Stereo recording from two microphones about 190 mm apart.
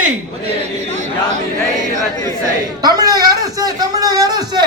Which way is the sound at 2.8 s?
20° right (ahead or behind).